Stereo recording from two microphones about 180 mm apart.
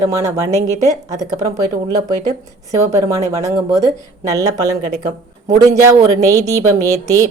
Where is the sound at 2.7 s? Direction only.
15° right (ahead or behind).